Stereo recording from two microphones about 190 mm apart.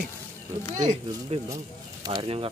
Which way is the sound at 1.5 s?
20° right (ahead or behind).